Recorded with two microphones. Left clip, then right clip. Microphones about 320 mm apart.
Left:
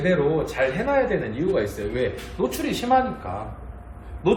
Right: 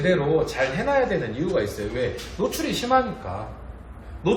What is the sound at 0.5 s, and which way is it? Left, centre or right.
A man's voice, centre.